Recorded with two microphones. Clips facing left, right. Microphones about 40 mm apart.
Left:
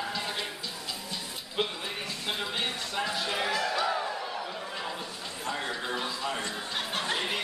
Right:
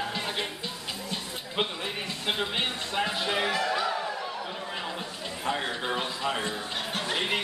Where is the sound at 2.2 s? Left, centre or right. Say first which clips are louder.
Right 3 dB; right.